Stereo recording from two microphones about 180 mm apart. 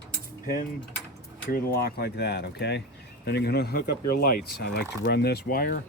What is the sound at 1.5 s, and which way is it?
Speech, 60° left (ahead or behind).